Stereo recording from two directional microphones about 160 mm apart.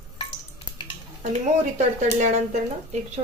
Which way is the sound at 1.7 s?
50° right (ahead or behind).